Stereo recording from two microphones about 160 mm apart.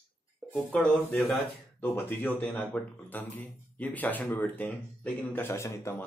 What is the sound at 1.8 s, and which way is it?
Speech, 10° left (ahead or behind).